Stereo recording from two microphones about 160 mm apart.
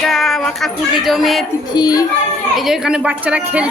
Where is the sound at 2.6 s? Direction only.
Centre (ahead or behind).